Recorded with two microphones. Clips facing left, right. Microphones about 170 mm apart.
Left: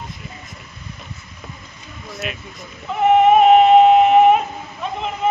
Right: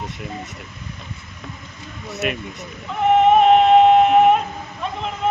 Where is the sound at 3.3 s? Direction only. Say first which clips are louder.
Left 2 dB; 5° left (ahead or behind).